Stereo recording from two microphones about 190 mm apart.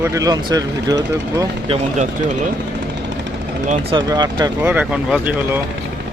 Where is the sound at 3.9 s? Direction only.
25° right (ahead or behind); by 5.6 s 5° right (ahead or behind).